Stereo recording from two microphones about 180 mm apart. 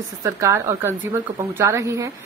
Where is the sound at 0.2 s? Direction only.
15° right (ahead or behind).